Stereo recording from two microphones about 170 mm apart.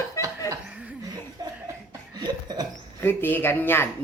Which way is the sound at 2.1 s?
25° right (ahead or behind).